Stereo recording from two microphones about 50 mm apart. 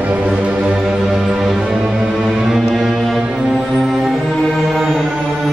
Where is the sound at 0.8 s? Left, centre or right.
Centre.